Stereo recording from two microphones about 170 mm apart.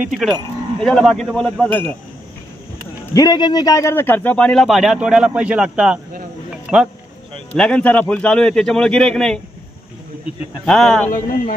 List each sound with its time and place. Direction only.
0.1 s livestock: centre (ahead or behind)
3.1 s a man's voice: 25° left (ahead or behind); by 5.9 s 5° right (ahead or behind)
7.5 s livestock: 5° left (ahead or behind)
10.6 s livestock: centre (ahead or behind)
11.1 s speech: 55° left (ahead or behind)